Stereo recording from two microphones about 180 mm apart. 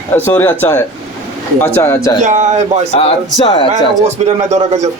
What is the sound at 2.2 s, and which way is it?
Speech, 40° right (ahead or behind).